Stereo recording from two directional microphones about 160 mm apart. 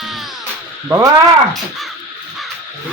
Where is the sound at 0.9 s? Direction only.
20° right (ahead or behind).